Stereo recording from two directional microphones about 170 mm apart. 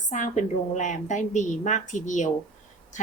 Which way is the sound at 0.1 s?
45° left (ahead or behind).